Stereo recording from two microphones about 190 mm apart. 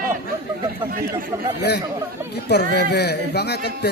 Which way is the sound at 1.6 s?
60° left (ahead or behind).